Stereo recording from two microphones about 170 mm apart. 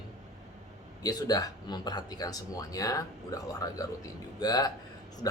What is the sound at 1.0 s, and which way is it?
Speech, 20° left (ahead or behind).